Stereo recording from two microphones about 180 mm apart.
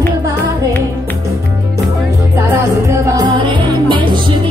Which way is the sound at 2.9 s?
25° right (ahead or behind).